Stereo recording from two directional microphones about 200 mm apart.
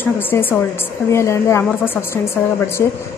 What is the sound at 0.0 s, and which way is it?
A woman's voice, 10° left (ahead or behind).